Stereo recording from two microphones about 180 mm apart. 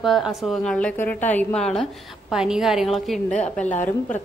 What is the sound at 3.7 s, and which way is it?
Speech, 45° left (ahead or behind).